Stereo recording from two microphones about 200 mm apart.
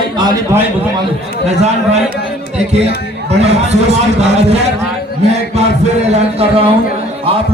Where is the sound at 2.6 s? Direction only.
30° right (ahead or behind).